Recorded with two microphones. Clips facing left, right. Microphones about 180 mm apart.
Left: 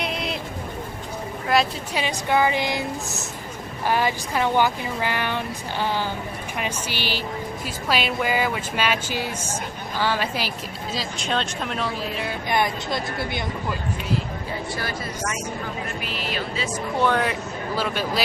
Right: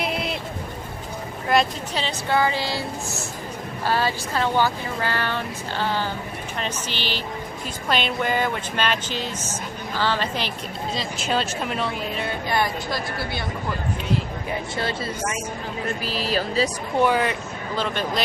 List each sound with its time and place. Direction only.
0.0 s a sound: centre (ahead or behind)
1.5 s a woman's voice: centre (ahead or behind)
2.0 s speech: 15° left (ahead or behind); by 12.4 s centre (ahead or behind)
12.4 s a woman's voice: 20° left (ahead or behind)
14.8 s speech: 25° right (ahead or behind)
16.0 s speech: 35° right (ahead or behind)
17.0 s speech: 5° right (ahead or behind)